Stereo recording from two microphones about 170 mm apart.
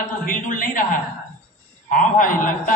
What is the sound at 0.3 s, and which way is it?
Speech, 50° left (ahead or behind).